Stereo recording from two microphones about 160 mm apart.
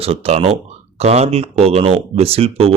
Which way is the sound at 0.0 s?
40° right (ahead or behind).